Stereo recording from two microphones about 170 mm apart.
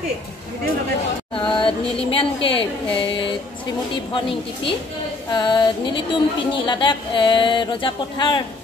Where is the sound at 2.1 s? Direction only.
30° left (ahead or behind).